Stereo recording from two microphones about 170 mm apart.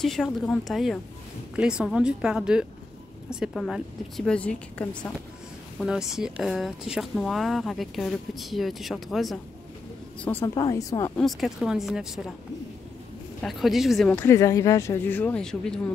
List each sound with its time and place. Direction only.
0.0 s speech: centre (ahead or behind)
10.2 s a woman's voice: 15° left (ahead or behind)
11.1 s speech: centre (ahead or behind)
13.4 s speech: centre (ahead or behind)